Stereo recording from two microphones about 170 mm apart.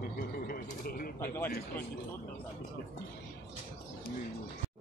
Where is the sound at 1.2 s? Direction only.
15° left (ahead or behind).